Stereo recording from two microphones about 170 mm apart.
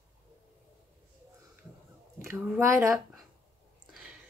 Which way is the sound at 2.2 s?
10° right (ahead or behind).